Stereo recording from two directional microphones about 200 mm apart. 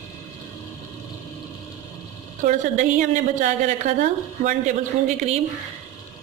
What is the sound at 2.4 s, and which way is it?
A woman's voice, 40° right (ahead or behind).